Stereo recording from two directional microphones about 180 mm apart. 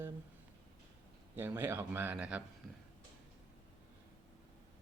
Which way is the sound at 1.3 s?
10° right (ahead or behind).